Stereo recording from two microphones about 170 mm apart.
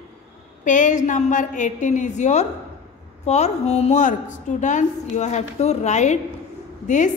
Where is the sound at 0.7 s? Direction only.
45° left (ahead or behind).